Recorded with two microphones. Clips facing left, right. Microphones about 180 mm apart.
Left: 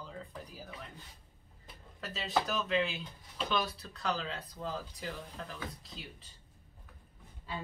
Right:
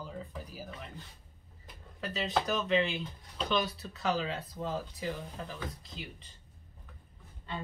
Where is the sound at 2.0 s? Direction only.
Centre (ahead or behind).